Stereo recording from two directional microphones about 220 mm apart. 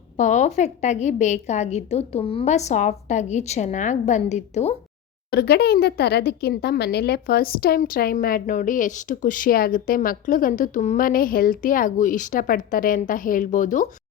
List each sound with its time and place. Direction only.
0.2 s speech: 35° left (ahead or behind)
5.3 s speech: 45° left (ahead or behind)